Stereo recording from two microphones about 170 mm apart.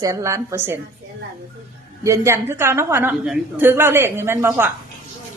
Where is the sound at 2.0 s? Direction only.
15° right (ahead or behind).